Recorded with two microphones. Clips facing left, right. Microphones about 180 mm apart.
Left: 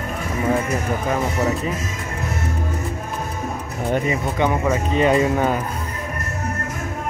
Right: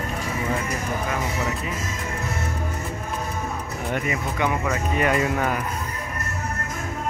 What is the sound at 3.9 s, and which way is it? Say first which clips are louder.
Speech: left 6 dB; 30° left (ahead or behind).